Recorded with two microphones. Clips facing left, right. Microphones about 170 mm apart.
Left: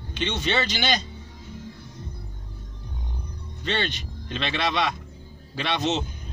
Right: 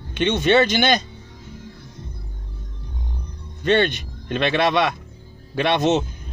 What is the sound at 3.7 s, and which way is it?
Speech, 55° right (ahead or behind).